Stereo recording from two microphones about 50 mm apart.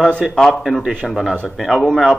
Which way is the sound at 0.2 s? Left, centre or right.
Centre.